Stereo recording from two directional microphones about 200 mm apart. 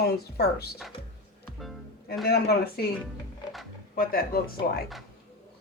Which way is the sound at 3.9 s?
45° left (ahead or behind).